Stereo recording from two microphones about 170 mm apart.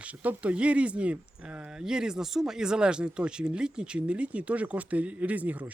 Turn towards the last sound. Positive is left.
turn(degrees=-10)  # may be behind; listen again after turning